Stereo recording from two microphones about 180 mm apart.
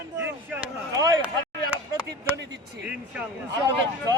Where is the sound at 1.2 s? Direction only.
5° right (ahead or behind).